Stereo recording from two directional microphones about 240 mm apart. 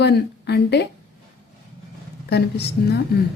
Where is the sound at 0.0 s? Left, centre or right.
Left.